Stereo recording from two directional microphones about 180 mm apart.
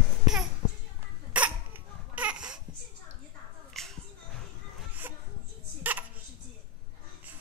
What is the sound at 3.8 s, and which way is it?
Music, centre (ahead or behind).